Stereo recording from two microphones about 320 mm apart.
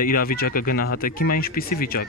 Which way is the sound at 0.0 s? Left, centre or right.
Left.